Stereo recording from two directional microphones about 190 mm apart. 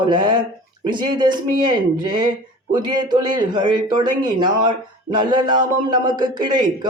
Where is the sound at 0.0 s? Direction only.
25° right (ahead or behind).